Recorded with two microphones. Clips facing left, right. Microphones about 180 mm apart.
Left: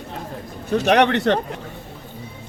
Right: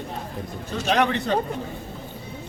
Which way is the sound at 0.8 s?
70° left (ahead or behind).